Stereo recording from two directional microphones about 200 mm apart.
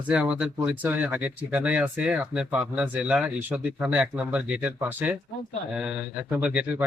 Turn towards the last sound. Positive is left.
turn(degrees=-5)  # may be behind; listen again after turning